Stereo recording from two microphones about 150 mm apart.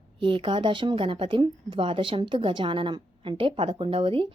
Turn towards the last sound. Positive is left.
turn(degrees=-35)  # may be behind; listen again after turning